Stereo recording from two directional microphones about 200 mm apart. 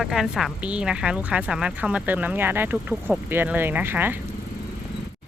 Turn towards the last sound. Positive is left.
turn(degrees=-10)  # may be behind; listen again after turning